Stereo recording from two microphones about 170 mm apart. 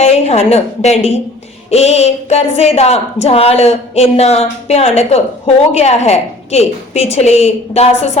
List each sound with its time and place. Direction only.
0.0 s a woman's voice: 40° left (ahead or behind)